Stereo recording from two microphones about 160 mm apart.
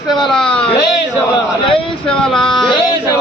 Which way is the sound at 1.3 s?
35° left (ahead or behind).